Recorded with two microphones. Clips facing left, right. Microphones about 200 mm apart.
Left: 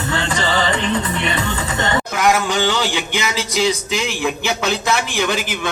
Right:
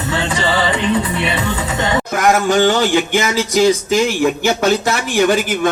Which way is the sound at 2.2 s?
45° right (ahead or behind).